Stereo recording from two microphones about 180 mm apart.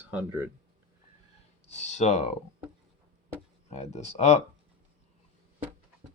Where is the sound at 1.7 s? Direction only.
40° left (ahead or behind).